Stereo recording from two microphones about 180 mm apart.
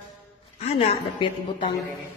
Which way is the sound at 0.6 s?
30° left (ahead or behind).